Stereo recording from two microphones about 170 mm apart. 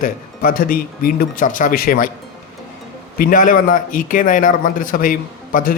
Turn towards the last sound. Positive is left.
turn(degrees=55)  # may be behind; listen again after turning